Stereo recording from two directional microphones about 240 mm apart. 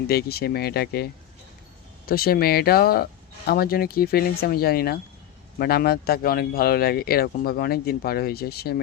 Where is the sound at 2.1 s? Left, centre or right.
Left.